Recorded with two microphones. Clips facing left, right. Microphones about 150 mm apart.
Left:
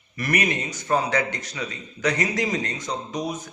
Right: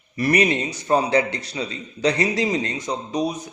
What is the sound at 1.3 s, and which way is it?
Speech, 30° right (ahead or behind).